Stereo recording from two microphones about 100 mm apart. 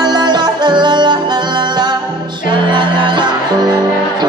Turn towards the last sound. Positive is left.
turn(degrees=-50)  # may be behind; listen again after turning